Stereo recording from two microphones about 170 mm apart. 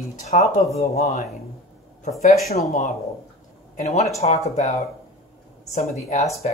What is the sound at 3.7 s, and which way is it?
Speech, 40° left (ahead or behind).